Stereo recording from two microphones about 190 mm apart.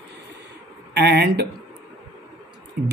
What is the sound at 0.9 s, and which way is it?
Speech, 60° right (ahead or behind).